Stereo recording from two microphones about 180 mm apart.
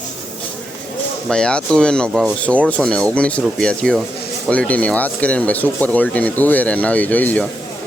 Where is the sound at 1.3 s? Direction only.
5° left (ahead or behind).